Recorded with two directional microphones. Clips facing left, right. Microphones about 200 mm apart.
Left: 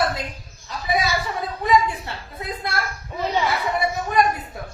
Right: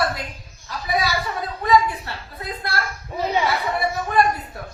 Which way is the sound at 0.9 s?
20° left (ahead or behind).